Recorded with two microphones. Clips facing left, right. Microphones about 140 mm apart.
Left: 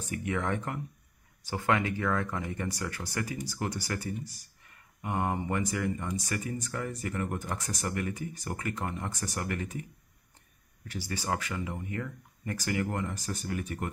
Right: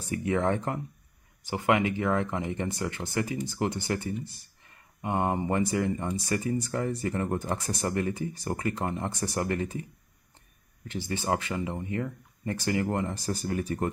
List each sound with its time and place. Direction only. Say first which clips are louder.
0.0 s speech: right 5 dB; 30° right (ahead or behind)
1.4 s speech: right 4 dB; 20° right (ahead or behind)
10.9 s speech: right 4 dB; 25° right (ahead or behind)